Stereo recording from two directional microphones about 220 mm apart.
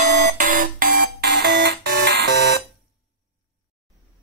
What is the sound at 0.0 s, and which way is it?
Alarm, 35° right (ahead or behind).